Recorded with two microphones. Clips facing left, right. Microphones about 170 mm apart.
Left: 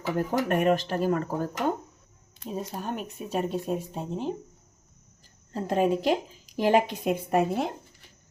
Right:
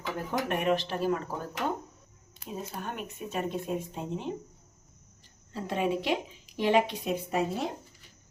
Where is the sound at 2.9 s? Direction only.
35° left (ahead or behind).